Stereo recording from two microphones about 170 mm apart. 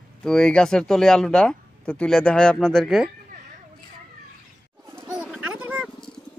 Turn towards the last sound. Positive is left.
turn(degrees=-10)  # may be behind; listen again after turning